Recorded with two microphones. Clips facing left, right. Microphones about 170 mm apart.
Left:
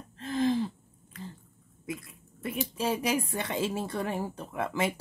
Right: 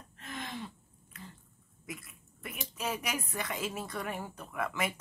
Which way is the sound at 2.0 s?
30° left (ahead or behind).